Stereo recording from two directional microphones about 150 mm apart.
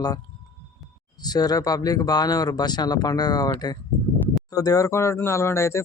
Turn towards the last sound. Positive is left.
turn(degrees=20)  # may be behind; listen again after turning